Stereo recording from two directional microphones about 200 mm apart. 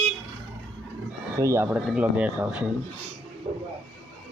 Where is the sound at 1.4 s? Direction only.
15° right (ahead or behind).